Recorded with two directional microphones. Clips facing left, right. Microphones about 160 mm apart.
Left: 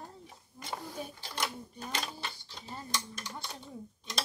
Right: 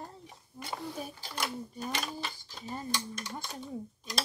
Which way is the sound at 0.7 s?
5° right (ahead or behind).